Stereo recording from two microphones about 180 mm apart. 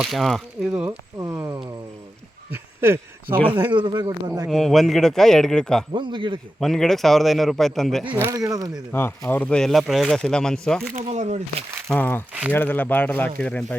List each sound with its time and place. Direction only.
0.0 s speech: centre (ahead or behind)
0.8 s speech: 15° right (ahead or behind)
3.5 s a man's voice: 25° right (ahead or behind)
4.4 s speech: centre (ahead or behind)
5.9 s a man's voice: 25° right (ahead or behind)
6.6 s speech: 5° left (ahead or behind)
8.1 s a man's voice: 15° right (ahead or behind)
8.9 s speech: 15° left (ahead or behind)
10.9 s speech: 40° right (ahead or behind)
11.9 s speech: 10° left (ahead or behind)